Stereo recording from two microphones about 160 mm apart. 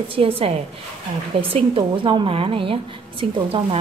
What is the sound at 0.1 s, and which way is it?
Speech, 35° right (ahead or behind).